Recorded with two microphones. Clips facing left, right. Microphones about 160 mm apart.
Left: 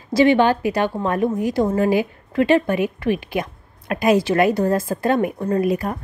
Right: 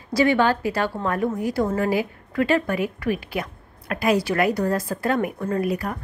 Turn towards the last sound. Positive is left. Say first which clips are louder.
# left 4 dB
turn(degrees=20)  # may be behind; listen again after turning